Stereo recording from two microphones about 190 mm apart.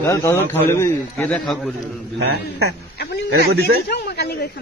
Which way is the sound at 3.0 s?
55° left (ahead or behind).